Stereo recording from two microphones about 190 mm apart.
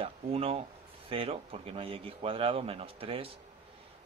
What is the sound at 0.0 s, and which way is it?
A man's voice, 30° right (ahead or behind).